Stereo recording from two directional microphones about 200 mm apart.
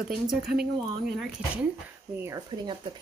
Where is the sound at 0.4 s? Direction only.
50° right (ahead or behind).